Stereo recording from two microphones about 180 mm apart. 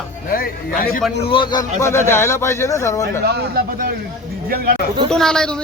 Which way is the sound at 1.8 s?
15° left (ahead or behind).